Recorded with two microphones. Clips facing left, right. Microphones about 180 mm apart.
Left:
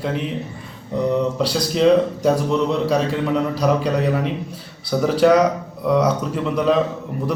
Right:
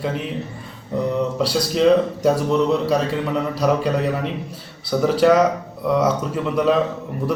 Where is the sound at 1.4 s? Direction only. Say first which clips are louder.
Right 1 dB; 5° right (ahead or behind).